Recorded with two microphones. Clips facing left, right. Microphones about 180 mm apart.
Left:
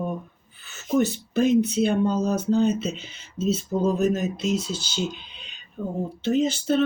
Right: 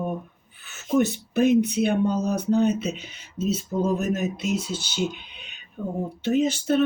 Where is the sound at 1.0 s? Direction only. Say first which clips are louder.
Right 1 dB; 60° right (ahead or behind).